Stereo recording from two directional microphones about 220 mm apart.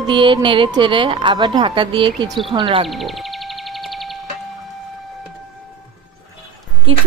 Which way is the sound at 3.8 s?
Centre (ahead or behind).